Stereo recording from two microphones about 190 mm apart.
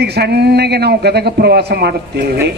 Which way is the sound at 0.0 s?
60° right (ahead or behind).